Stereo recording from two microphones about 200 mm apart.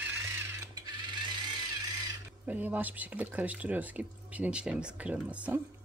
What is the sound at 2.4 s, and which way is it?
Speech, 10° right (ahead or behind).